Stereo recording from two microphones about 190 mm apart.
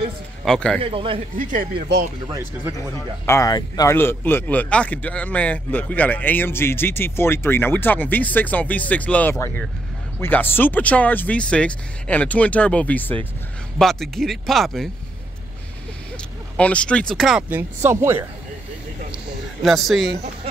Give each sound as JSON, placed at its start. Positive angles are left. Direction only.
{"t": 0.5, "sound": "speech", "side_deg": 5}
{"t": 0.8, "sound": "a man's voice", "side_deg": -30}
{"t": 1.4, "sound": "speech", "side_deg": -45}
{"t": 2.2, "sound": "speech", "side_deg": -15}
{"t": 3.3, "sound": "speech", "side_deg": 15}
{"t": 16.5, "sound": "speech", "side_deg": 5}
{"t": 19.1, "sound": "a sound", "side_deg": 0}